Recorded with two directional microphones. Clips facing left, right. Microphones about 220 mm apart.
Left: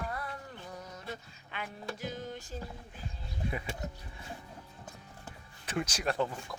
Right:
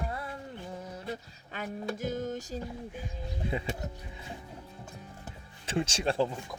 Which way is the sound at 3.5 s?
25° right (ahead or behind).